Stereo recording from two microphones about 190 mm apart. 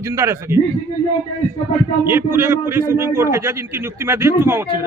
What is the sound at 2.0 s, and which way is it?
A man's voice, 15° right (ahead or behind).